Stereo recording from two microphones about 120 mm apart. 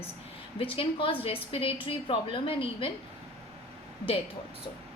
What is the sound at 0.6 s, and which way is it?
A woman's voice, 50° left (ahead or behind).